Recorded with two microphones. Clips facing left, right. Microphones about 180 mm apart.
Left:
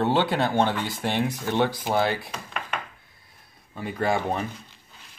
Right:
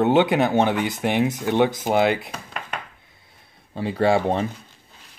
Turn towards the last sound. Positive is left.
turn(degrees=-30)  # may be behind; listen again after turning